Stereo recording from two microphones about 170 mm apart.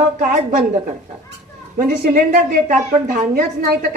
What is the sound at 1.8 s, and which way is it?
Speech, 55° right (ahead or behind).